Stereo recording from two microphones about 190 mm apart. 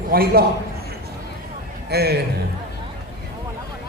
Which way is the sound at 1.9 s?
55° right (ahead or behind).